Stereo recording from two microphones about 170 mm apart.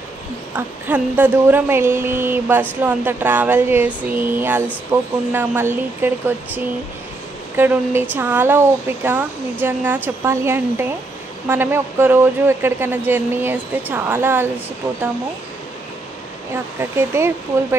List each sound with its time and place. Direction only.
0.6 s speech: 10° right (ahead or behind)
17.1 s speech: 15° right (ahead or behind)